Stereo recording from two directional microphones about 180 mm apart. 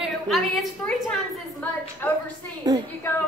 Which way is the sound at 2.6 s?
20° right (ahead or behind).